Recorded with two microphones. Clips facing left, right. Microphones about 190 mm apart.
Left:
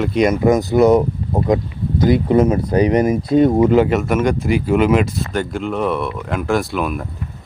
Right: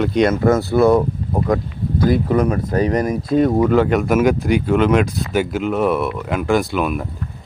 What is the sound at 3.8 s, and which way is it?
Speech, centre (ahead or behind).